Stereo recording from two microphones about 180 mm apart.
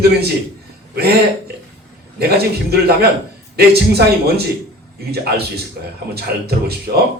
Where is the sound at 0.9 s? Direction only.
60° right (ahead or behind).